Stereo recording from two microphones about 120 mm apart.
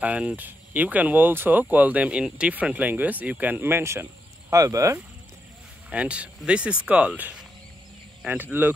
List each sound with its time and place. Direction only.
0.0 s speech: 10° right (ahead or behind); by 4.9 s 25° right (ahead or behind)
5.9 s speech: 10° right (ahead or behind)